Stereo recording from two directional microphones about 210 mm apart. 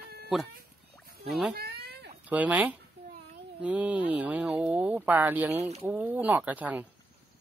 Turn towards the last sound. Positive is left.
turn(degrees=-5)  # may be behind; listen again after turning